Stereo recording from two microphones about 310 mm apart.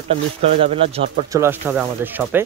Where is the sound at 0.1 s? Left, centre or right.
Centre.